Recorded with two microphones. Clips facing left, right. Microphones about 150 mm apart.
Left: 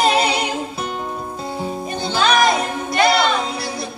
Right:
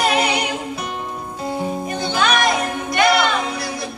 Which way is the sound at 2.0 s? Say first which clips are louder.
Left 2 dB; 30° left (ahead or behind).